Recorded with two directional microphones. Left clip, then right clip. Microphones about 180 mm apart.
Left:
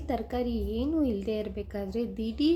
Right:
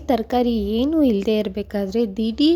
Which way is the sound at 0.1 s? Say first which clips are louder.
Right 12 dB; 55° right (ahead or behind).